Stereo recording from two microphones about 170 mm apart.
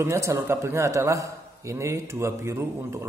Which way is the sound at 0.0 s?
15° right (ahead or behind).